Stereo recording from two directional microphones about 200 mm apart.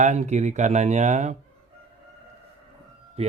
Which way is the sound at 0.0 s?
35° right (ahead or behind).